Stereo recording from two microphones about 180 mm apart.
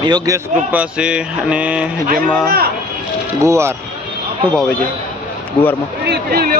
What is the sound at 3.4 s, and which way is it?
Speech, 15° right (ahead or behind).